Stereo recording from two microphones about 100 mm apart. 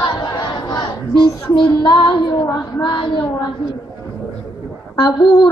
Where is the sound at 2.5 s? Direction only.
50° left (ahead or behind).